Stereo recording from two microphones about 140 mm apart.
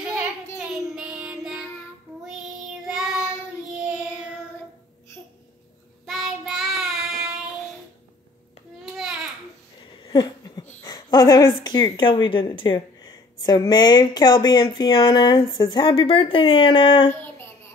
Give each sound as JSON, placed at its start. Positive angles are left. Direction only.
{"t": 0.6, "sound": "child singing", "side_deg": -5}
{"t": 2.9, "sound": "child singing", "side_deg": -5}
{"t": 6.0, "sound": "child singing", "side_deg": 0}
{"t": 8.8, "sound": "babbling", "side_deg": -5}
{"t": 10.0, "sound": "a sound", "side_deg": 30}
{"t": 11.6, "sound": "speech", "side_deg": 30}
{"t": 15.9, "sound": "speech", "side_deg": 40}